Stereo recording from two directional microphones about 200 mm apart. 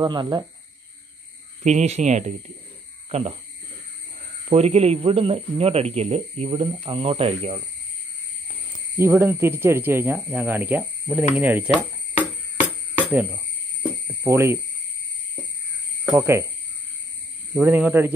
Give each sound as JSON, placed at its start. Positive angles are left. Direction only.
{"t": 0.0, "sound": "speech", "side_deg": -20}
{"t": 1.6, "sound": "speech", "side_deg": -35}
{"t": 4.5, "sound": "speech", "side_deg": -30}
{"t": 8.9, "sound": "speech", "side_deg": -15}
{"t": 12.9, "sound": "a sound", "side_deg": -5}
{"t": 14.0, "sound": "speech", "side_deg": -10}
{"t": 16.1, "sound": "speech", "side_deg": -15}
{"t": 17.6, "sound": "speech", "side_deg": -10}